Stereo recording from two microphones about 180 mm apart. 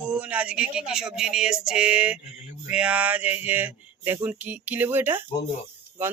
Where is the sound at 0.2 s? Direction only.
10° right (ahead or behind).